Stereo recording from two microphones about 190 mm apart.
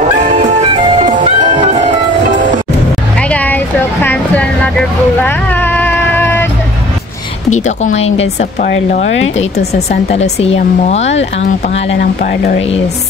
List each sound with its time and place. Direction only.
0.4 s music: 30° right (ahead or behind)
3.2 s vehicle: 5° left (ahead or behind)
7.5 s speech: 40° left (ahead or behind)
9.6 s speech: 55° left (ahead or behind)
10.1 s speech: 35° left (ahead or behind)
12.0 s speech: 50° left (ahead or behind)
12.5 s speech: 30° left (ahead or behind)